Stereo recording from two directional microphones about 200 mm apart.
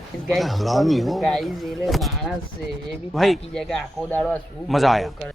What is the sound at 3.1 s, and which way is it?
A child's voice, centre (ahead or behind).